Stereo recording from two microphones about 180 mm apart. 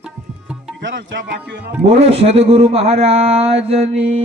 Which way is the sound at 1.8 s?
35° right (ahead or behind).